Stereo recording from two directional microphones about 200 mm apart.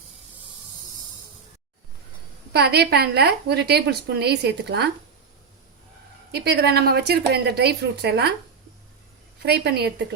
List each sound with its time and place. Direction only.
2.5 s a woman's voice: 55° right (ahead or behind)
6.3 s speech: 55° right (ahead or behind)
9.4 s a woman's voice: 55° right (ahead or behind)